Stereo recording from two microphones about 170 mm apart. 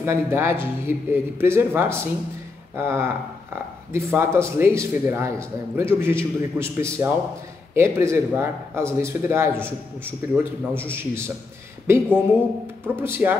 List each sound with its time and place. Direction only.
0.0 s a man's voice: 15° right (ahead or behind)